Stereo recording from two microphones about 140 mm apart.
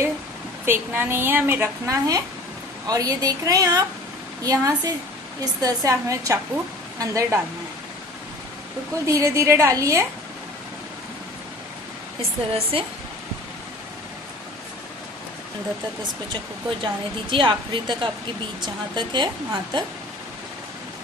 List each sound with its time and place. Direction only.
0.7 s a woman's voice: 15° right (ahead or behind)
9.0 s a woman's voice: 20° right (ahead or behind)
12.2 s speech: 45° right (ahead or behind)
16.8 s a woman's voice: 35° right (ahead or behind)